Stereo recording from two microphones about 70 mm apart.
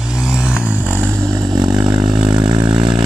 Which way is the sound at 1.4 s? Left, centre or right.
Right.